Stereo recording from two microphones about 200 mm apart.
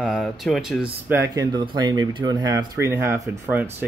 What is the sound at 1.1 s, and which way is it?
Speech, 15° right (ahead or behind).